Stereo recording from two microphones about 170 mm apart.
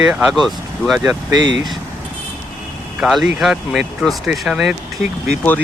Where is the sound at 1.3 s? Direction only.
25° right (ahead or behind).